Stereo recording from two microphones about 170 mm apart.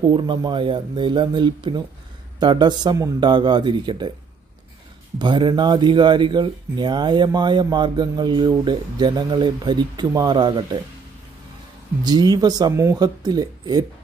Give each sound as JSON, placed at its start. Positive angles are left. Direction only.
{"t": 0.1, "sound": "speech", "side_deg": -25}
{"t": 5.2, "sound": "speech", "side_deg": -25}
{"t": 12.0, "sound": "speech", "side_deg": -25}